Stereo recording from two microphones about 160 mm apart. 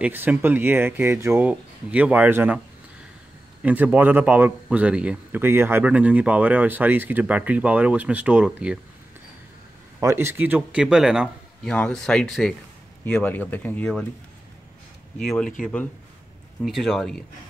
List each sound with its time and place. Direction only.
0.0 s a man's voice: 10° right (ahead or behind)
3.6 s a man's voice: 10° right (ahead or behind)
9.9 s a man's voice: 15° right (ahead or behind); by 14.0 s 10° left (ahead or behind)
15.1 s speech: 5° left (ahead or behind)